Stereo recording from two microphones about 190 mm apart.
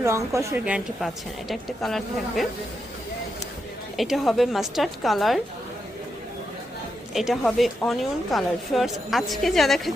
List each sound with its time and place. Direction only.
0.0 s a woman's voice: 15° right (ahead or behind); by 2.5 s centre (ahead or behind)
3.9 s a woman's voice: centre (ahead or behind)
7.1 s a woman's voice: centre (ahead or behind)